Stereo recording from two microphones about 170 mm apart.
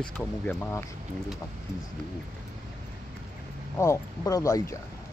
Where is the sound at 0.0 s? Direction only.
5° left (ahead or behind).